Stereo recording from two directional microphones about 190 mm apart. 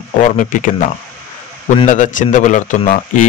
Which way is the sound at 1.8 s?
40° left (ahead or behind).